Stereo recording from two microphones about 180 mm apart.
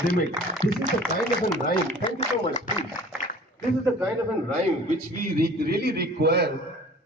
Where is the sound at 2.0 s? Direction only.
35° left (ahead or behind).